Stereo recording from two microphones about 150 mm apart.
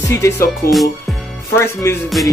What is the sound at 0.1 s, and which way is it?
Speech, 20° left (ahead or behind).